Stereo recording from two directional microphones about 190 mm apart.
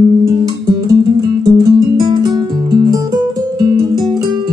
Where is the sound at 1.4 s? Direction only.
20° right (ahead or behind).